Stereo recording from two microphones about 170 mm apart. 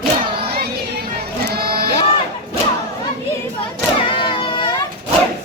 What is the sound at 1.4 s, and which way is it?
Crowd, 65° right (ahead or behind).